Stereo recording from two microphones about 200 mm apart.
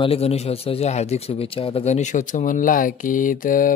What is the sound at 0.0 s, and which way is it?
A man's voice, 30° left (ahead or behind).